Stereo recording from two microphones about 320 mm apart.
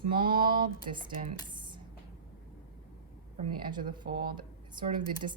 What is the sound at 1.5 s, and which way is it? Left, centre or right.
Music, centre.